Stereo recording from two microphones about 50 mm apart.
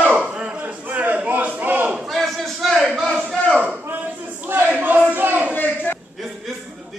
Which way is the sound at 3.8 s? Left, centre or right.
Right.